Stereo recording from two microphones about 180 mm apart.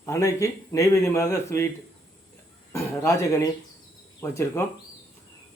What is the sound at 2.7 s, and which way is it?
Speech, 15° left (ahead or behind).